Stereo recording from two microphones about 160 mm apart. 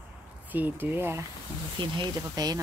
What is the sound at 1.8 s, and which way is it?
Speech, 25° right (ahead or behind).